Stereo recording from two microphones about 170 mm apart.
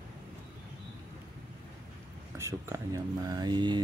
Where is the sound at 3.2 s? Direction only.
25° right (ahead or behind).